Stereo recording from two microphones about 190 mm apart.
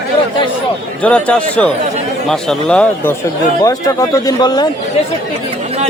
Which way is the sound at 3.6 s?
15° left (ahead or behind).